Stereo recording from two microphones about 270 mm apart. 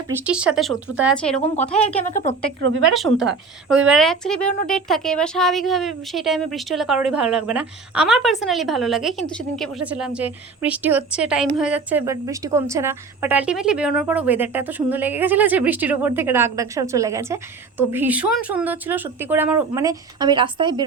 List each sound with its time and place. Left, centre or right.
0.3 s speech: centre
2.0 s speech: left
2.6 s speech: right
2.8 s a woman's voice: centre